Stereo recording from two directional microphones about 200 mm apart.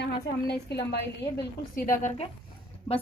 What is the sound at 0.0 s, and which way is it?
Speech, 60° left (ahead or behind).